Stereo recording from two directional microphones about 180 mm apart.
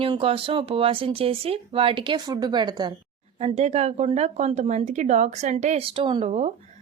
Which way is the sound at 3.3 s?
35° right (ahead or behind).